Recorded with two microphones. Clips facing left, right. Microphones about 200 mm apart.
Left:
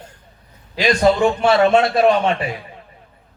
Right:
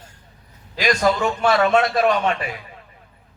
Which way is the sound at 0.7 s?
25° left (ahead or behind).